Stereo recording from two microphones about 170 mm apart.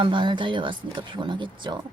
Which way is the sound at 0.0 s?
30° right (ahead or behind).